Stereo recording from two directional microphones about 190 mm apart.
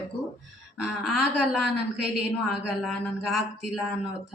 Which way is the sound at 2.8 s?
Centre (ahead or behind).